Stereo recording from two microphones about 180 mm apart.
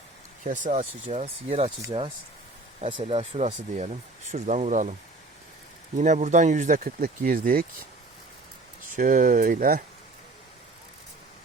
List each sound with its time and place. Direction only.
0.4 s speech: 45° right (ahead or behind)
6.0 s speech: 40° right (ahead or behind)
8.9 s speech: 50° right (ahead or behind)